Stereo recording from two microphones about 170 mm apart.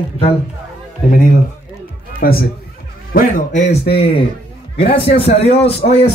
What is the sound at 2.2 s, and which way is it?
Speech, 60° left (ahead or behind).